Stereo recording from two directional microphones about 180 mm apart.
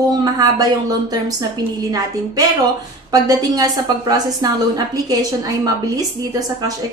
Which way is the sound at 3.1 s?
20° right (ahead or behind).